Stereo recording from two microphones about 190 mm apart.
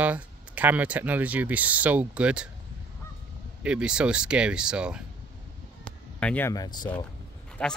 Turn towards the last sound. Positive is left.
turn(degrees=5)  # may be behind; listen again after turning